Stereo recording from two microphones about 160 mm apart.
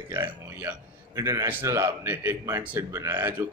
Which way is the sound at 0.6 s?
15° right (ahead or behind).